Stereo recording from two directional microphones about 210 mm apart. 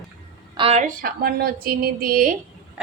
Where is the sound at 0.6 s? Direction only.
30° right (ahead or behind).